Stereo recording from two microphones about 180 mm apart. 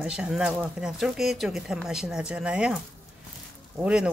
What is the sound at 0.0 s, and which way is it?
Speech, 5° right (ahead or behind).